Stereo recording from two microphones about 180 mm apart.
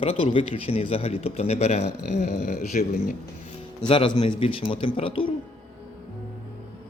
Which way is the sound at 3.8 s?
30° left (ahead or behind).